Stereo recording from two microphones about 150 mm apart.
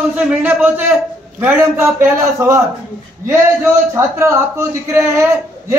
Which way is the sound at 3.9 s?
15° right (ahead or behind).